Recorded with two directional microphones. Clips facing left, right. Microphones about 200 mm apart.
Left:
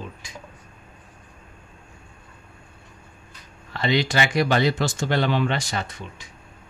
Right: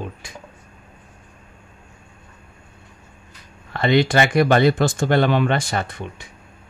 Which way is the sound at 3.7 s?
55° right (ahead or behind).